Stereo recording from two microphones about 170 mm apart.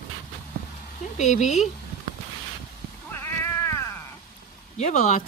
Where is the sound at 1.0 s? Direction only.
45° left (ahead or behind).